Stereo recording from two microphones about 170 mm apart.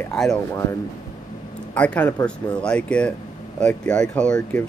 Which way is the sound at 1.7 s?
10° left (ahead or behind).